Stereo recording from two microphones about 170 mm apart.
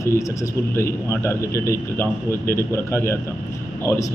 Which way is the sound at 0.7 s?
15° left (ahead or behind).